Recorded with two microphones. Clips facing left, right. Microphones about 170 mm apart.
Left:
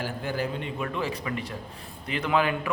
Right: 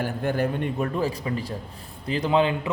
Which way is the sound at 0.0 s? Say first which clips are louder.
Right 5 dB; 55° right (ahead or behind).